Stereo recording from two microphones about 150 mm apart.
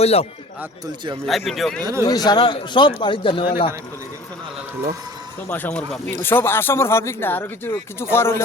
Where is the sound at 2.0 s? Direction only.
25° left (ahead or behind).